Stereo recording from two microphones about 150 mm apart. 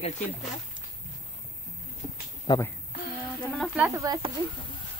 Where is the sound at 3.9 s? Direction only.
25° right (ahead or behind).